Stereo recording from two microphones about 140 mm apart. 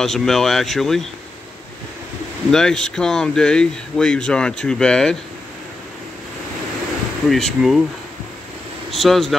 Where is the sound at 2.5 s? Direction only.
5° left (ahead or behind).